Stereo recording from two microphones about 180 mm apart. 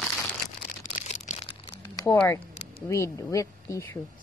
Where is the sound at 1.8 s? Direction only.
20° left (ahead or behind).